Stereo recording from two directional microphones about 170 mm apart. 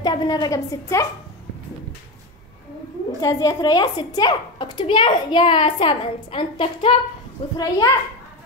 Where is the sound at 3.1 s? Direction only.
20° left (ahead or behind).